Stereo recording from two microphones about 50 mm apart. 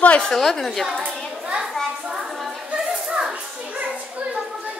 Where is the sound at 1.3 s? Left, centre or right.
Centre.